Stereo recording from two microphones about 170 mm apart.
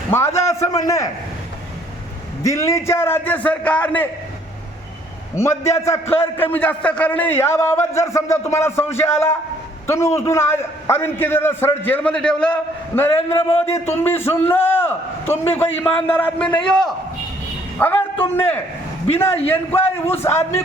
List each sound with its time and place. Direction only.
0.1 s a man's voice: 15° left (ahead or behind)
2.4 s a man's voice: 20° left (ahead or behind)
5.3 s a man's voice: 15° left (ahead or behind)
17.7 s a woman's voice: 10° left (ahead or behind)
19.5 s a man's voice: 10° left (ahead or behind)